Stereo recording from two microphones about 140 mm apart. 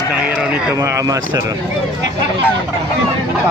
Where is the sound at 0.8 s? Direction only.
20° right (ahead or behind).